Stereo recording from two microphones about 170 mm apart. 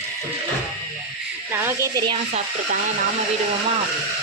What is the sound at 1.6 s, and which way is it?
Speech, 15° right (ahead or behind).